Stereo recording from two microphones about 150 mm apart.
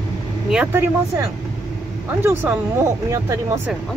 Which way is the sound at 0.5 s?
10° right (ahead or behind).